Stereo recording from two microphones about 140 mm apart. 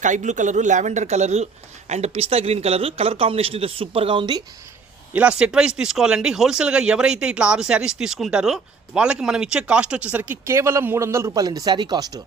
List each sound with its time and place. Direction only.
0.0 s speech: 60° right (ahead or behind); by 4.4 s 35° right (ahead or behind)
5.1 s speech: 10° right (ahead or behind); by 12.2 s 30° right (ahead or behind)